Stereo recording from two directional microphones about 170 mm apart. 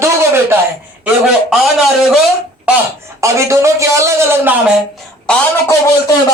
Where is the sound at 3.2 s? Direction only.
15° right (ahead or behind).